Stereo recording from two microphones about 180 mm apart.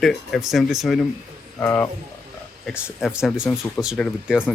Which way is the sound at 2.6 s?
5° right (ahead or behind).